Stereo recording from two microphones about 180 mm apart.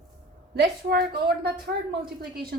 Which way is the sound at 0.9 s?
60° right (ahead or behind).